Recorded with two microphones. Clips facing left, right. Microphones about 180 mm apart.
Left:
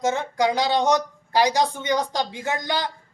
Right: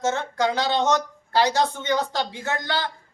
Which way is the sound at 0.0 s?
15° left (ahead or behind).